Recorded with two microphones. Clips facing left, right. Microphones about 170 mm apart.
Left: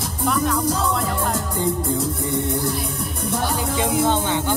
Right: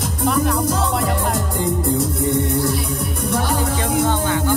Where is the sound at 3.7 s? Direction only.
20° left (ahead or behind).